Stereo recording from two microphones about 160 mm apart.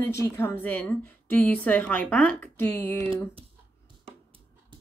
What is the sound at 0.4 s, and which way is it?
A woman's voice, 10° left (ahead or behind).